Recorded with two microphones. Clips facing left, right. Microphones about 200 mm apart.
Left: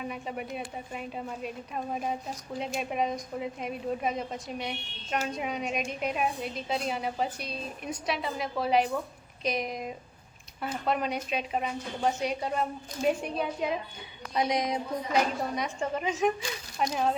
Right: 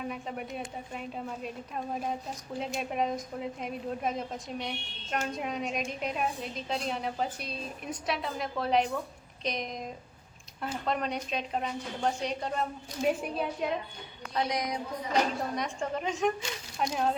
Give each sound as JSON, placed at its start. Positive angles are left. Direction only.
{"t": 0.0, "sound": "a woman's voice", "side_deg": 0}
{"t": 14.3, "sound": "a sound", "side_deg": 20}
{"t": 15.1, "sound": "a woman's voice", "side_deg": 5}